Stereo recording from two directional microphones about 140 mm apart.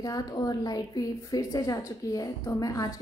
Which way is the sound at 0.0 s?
25° left (ahead or behind).